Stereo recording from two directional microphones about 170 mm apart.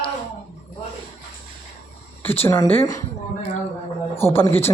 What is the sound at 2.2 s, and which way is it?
Speech, 10° left (ahead or behind).